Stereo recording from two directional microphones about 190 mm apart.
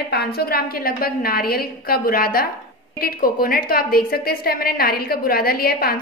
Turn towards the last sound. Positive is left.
turn(degrees=50)  # may be behind; listen again after turning